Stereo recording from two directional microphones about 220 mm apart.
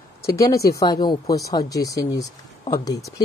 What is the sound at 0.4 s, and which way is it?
Speech, 15° left (ahead or behind).